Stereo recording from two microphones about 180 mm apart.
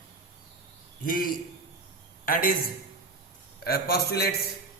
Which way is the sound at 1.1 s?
50° left (ahead or behind).